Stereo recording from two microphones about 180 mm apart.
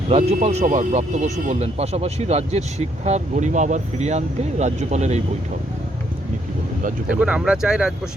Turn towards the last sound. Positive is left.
turn(degrees=-5)  # may be behind; listen again after turning